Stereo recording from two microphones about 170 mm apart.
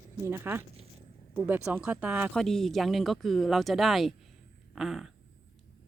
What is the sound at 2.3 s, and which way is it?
Speech, centre (ahead or behind).